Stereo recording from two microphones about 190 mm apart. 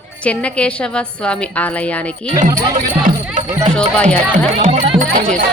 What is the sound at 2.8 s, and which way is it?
Music, 45° right (ahead or behind).